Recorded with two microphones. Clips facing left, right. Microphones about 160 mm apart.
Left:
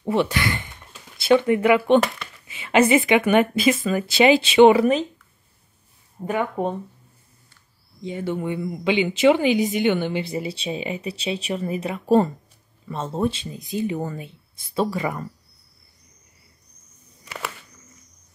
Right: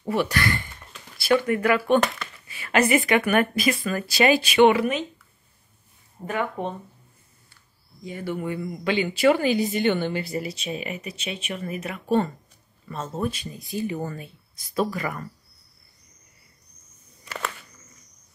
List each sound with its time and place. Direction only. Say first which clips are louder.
0.0 s speech: left 2 dB; 20° left (ahead or behind)
2.0 s speech: left 3 dB; centre (ahead or behind)
2.4 s speech: left 4 dB; 20° left (ahead or behind)
6.2 s speech: left 4 dB; 15° left (ahead or behind)
8.0 s speech: left 3 dB; 20° left (ahead or behind)
17.2 s a sound: right 1 dB; 5° left (ahead or behind)